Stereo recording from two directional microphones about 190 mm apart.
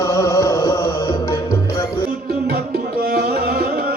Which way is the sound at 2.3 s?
55° right (ahead or behind).